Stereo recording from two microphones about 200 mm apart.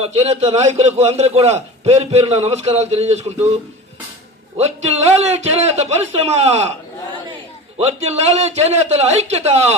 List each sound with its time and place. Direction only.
0.0 s a man's voice: 30° right (ahead or behind)
4.5 s a man's voice: 30° right (ahead or behind)
7.8 s a man's voice: 30° right (ahead or behind)